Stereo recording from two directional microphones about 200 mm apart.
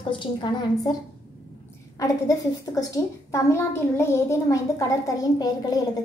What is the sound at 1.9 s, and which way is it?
A child's voice, 15° left (ahead or behind).